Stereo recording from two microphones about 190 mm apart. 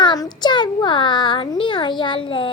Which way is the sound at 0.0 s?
20° left (ahead or behind).